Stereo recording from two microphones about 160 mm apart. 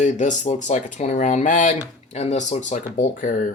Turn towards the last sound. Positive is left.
turn(degrees=55)  # may be behind; listen again after turning